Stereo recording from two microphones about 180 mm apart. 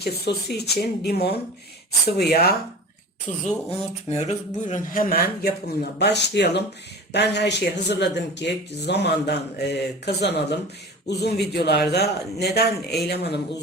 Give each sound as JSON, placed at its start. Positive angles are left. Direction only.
{"t": 0.0, "sound": "speech", "side_deg": 65}
{"t": 3.3, "sound": "a woman's voice", "side_deg": 45}